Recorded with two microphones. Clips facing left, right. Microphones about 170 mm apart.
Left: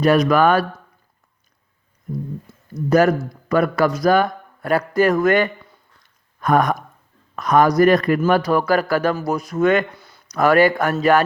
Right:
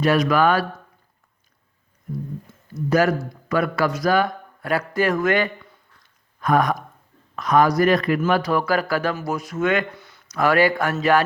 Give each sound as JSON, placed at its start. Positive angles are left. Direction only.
{"t": 0.0, "sound": "a man's voice", "side_deg": 40}
{"t": 3.5, "sound": "a man's voice", "side_deg": 40}